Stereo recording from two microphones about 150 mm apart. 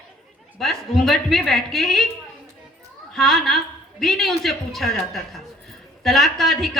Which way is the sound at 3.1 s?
Centre (ahead or behind).